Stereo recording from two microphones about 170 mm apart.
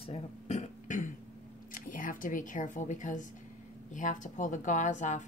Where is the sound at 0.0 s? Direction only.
40° left (ahead or behind).